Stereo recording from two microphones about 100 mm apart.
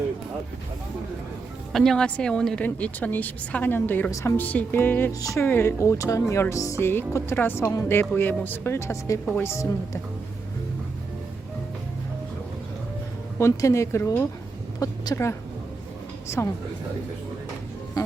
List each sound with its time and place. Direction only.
1.7 s a woman's voice: 5° left (ahead or behind); by 4.1 s 20° left (ahead or behind)
4.1 s speech: 30° left (ahead or behind)
4.4 s speech: 15° left (ahead or behind)
5.2 s speech: 30° left (ahead or behind)
13.4 s speech: 30° left (ahead or behind)
14.8 s a sound: 35° left (ahead or behind)
16.4 s speech: 25° left (ahead or behind)